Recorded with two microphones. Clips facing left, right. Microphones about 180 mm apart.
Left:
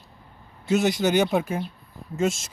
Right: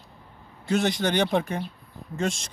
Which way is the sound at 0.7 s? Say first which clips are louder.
Left 3 dB; 5° left (ahead or behind).